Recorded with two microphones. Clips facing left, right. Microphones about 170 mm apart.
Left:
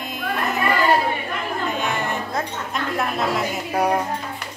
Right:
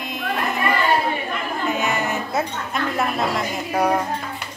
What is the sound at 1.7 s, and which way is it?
Music, 5° right (ahead or behind).